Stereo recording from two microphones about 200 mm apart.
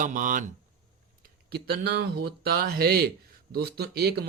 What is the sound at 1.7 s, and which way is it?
Speech, 50° right (ahead or behind).